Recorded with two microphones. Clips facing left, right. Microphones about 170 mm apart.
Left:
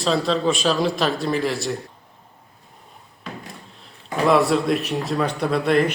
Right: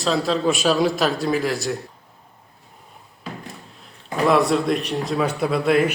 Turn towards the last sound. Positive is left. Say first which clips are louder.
# even
turn(degrees=-5)  # may be behind; listen again after turning